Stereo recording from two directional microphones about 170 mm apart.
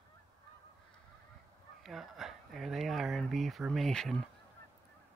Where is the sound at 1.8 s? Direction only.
Centre (ahead or behind).